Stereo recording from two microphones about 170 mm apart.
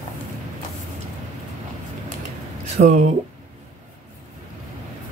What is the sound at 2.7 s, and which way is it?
Speech, 45° right (ahead or behind).